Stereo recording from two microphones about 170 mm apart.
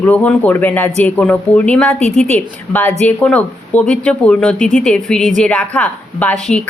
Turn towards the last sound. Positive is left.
turn(degrees=5)  # may be behind; listen again after turning